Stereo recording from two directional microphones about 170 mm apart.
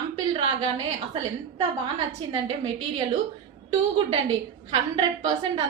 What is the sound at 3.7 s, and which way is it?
A woman's voice, 30° right (ahead or behind).